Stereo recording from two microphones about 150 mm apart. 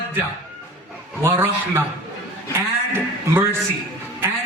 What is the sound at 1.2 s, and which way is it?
A man's voice, 15° right (ahead or behind).